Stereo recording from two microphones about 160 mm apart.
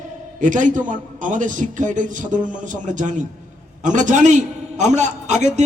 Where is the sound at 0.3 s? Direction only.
55° right (ahead or behind).